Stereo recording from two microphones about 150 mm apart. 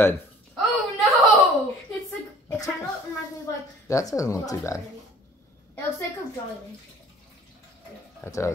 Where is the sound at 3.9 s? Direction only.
20° left (ahead or behind).